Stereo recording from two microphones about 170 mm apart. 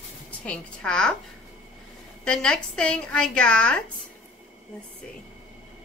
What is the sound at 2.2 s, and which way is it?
A woman's voice, 5° left (ahead or behind).